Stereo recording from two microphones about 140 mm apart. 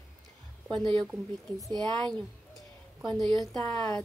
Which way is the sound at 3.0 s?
Centre (ahead or behind).